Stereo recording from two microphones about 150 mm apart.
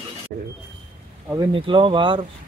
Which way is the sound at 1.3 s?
30° right (ahead or behind).